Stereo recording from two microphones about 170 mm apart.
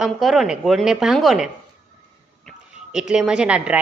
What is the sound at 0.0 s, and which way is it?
A woman's voice, centre (ahead or behind).